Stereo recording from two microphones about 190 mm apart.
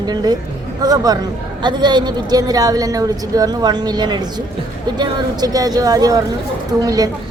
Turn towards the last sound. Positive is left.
turn(degrees=-20)  # may be behind; listen again after turning